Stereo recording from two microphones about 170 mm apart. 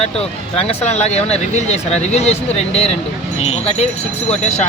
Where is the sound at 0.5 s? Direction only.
35° left (ahead or behind).